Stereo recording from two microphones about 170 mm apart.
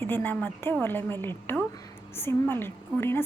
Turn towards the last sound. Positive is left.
turn(degrees=15)  # may be behind; listen again after turning